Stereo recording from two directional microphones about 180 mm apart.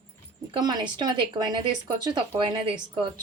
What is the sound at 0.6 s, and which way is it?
Speech, 20° right (ahead or behind).